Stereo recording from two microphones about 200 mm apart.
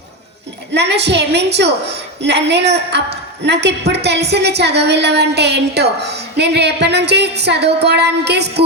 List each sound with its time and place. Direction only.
0.7 s a woman's voice: 60° right (ahead or behind)